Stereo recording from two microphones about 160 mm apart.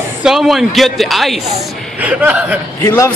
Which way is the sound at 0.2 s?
Centre (ahead or behind).